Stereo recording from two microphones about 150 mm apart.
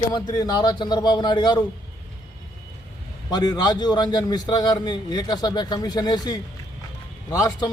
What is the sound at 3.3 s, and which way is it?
A man's voice, 25° left (ahead or behind).